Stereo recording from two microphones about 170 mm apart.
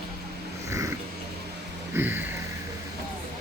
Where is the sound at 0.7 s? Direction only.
20° right (ahead or behind).